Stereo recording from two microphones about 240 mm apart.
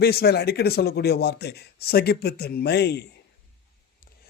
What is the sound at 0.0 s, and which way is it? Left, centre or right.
A man's voice, left.